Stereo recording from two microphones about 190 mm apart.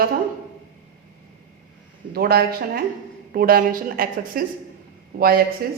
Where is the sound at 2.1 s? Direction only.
55° right (ahead or behind).